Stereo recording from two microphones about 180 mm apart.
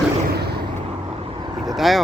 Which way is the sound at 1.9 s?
Centre (ahead or behind).